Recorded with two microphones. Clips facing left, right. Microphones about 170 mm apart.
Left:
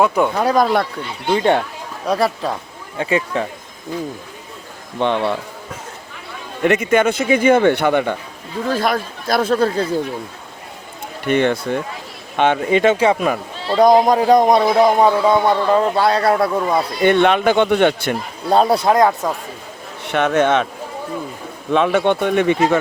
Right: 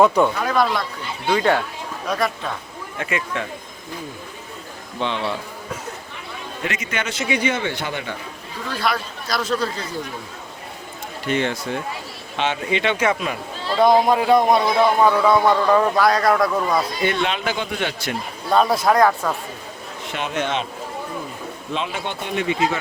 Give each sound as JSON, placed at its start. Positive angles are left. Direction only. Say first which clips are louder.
{"t": 0.0, "sound": "speech", "louder": "even", "side_deg": 5}
{"t": 0.4, "sound": "a man's voice", "louder": "left 4 dB", "side_deg": 40}
{"t": 1.3, "sound": "a man's voice", "louder": "left 3 dB", "side_deg": 25}
{"t": 4.9, "sound": "speech", "louder": "left 6 dB", "side_deg": 55}
{"t": 6.6, "sound": "a man's voice", "louder": "left 13 dB", "side_deg": 50}
{"t": 11.3, "sound": "a man's voice", "louder": "left 6 dB", "side_deg": 55}
{"t": 17.0, "sound": "speech", "louder": "left 8 dB", "side_deg": 55}
{"t": 18.5, "sound": "a man's voice", "louder": "left 3 dB", "side_deg": 35}
{"t": 18.9, "sound": "speech", "louder": "left 2 dB", "side_deg": 20}
{"t": 20.1, "sound": "speech", "louder": "left 9 dB", "side_deg": 60}
{"t": 21.7, "sound": "speech", "louder": "left 12 dB", "side_deg": 60}